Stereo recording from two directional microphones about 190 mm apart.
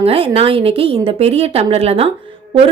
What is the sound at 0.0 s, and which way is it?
A woman's voice, 30° right (ahead or behind).